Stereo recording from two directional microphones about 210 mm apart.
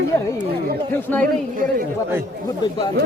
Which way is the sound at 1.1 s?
10° left (ahead or behind).